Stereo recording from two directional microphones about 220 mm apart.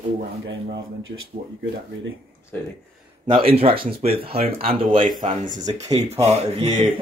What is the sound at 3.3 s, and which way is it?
Speech, 25° right (ahead or behind).